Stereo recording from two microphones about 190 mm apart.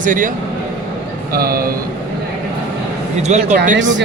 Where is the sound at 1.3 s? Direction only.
50° right (ahead or behind).